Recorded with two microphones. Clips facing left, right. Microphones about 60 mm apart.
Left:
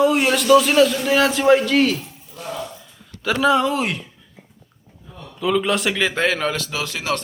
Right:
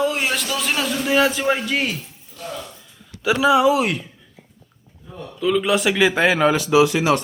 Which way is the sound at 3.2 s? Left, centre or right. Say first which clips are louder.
Right 2 dB; centre.